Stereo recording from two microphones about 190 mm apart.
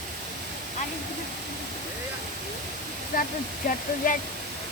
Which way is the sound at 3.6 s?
45° left (ahead or behind).